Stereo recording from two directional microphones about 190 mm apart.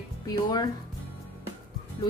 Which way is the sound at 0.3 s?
20° left (ahead or behind).